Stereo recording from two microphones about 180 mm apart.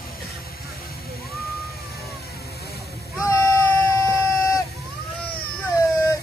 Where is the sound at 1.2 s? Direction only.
Centre (ahead or behind).